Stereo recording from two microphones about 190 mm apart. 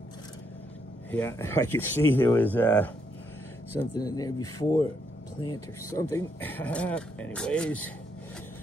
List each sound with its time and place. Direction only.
1.1 s speech: 15° left (ahead or behind)
3.9 s speech: 20° left (ahead or behind)